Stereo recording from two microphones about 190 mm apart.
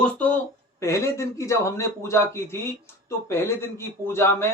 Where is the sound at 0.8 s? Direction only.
15° left (ahead or behind).